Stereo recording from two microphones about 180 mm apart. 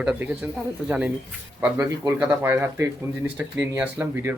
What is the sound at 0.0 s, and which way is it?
Speech, 5° right (ahead or behind).